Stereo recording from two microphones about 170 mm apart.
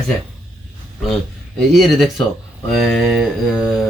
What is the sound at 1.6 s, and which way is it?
Speech, centre (ahead or behind).